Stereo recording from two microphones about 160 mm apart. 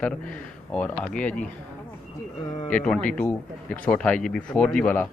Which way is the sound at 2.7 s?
5° left (ahead or behind).